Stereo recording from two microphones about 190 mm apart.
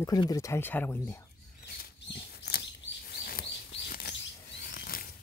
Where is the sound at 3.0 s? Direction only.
55° left (ahead or behind).